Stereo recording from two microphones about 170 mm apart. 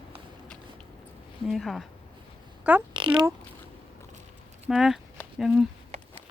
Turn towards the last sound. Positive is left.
turn(degrees=-5)  # may be behind; listen again after turning